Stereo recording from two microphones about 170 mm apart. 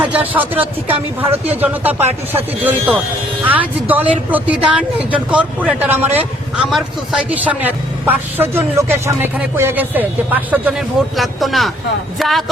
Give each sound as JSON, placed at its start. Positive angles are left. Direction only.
{"t": 0.0, "sound": "a man's voice", "side_deg": -10}